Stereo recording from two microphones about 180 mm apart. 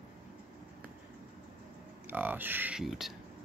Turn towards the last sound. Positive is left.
turn(degrees=0)  # may be behind; listen again after turning